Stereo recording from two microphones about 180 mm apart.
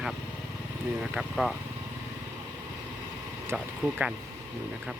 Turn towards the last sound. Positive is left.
turn(degrees=-5)  # may be behind; listen again after turning